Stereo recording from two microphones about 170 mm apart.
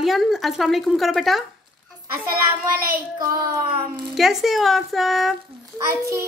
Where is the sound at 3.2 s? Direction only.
15° right (ahead or behind).